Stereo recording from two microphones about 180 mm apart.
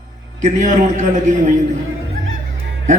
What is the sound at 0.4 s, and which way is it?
Speech, 40° right (ahead or behind).